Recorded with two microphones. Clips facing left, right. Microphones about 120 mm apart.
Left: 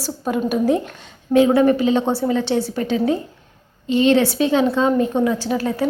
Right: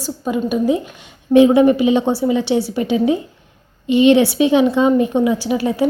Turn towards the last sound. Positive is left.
turn(degrees=-15)  # may be behind; listen again after turning